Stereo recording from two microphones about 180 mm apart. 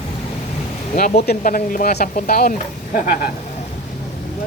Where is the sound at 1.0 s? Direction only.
55° left (ahead or behind).